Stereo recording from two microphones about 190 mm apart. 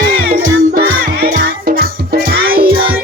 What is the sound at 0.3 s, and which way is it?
Music, 45° right (ahead or behind).